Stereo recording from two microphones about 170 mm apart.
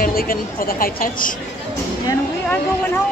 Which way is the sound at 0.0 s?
60° left (ahead or behind).